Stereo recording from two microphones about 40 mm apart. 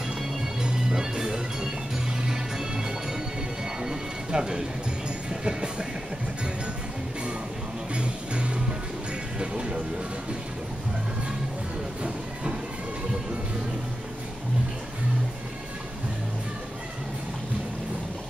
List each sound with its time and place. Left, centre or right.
0.6 s music: centre
3.8 s a sound: centre
5.3 s music: right
7.9 s music: right